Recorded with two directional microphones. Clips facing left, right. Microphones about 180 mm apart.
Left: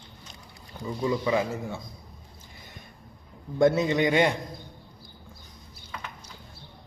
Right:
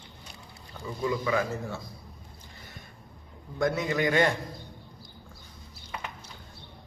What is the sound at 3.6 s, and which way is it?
Speech, 25° left (ahead or behind).